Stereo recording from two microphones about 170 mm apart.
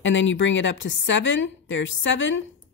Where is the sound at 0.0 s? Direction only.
90° left.